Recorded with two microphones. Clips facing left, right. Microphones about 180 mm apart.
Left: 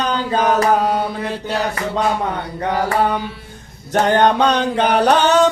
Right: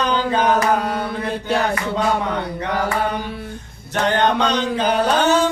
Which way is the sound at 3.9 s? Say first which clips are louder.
Left 4 dB; 50° left (ahead or behind).